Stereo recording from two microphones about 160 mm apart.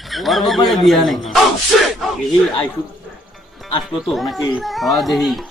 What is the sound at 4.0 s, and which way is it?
Speech, centre (ahead or behind).